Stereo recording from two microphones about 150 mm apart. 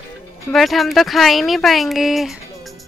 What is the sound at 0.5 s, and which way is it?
Speech, centre (ahead or behind).